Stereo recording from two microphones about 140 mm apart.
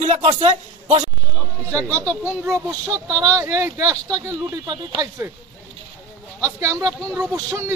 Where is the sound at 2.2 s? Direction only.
15° right (ahead or behind).